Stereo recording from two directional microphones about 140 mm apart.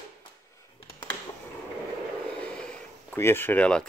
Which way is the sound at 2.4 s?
5° left (ahead or behind).